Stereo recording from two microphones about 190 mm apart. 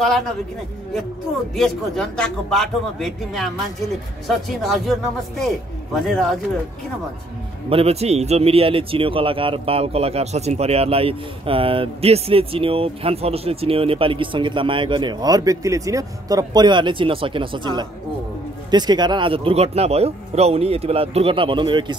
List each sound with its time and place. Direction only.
0.0 s speech: centre (ahead or behind)
1.5 s speech: centre (ahead or behind)
6.0 s speech: centre (ahead or behind)
7.7 s speech: 35° right (ahead or behind)